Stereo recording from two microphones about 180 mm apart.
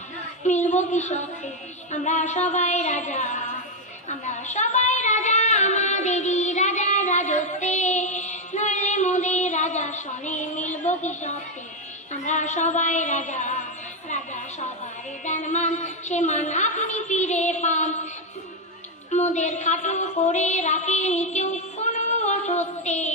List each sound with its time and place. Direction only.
0.7 s a woman's voice: 40° left (ahead or behind)
1.9 s music: 40° left (ahead or behind)
4.1 s a sound: 40° left (ahead or behind)
10.8 s a woman's voice: 40° left (ahead or behind)
12.2 s music: 40° left (ahead or behind)
15.2 s a woman's voice: 40° left (ahead or behind)
19.1 s a sound: 40° left (ahead or behind)